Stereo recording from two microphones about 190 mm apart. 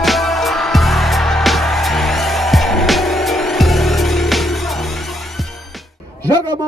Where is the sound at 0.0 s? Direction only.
Centre (ahead or behind).